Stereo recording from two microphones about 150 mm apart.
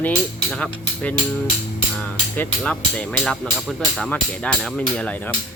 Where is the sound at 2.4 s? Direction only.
10° left (ahead or behind).